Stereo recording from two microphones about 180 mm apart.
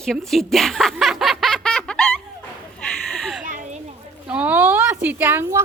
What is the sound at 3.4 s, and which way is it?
Children playing, 45° right (ahead or behind).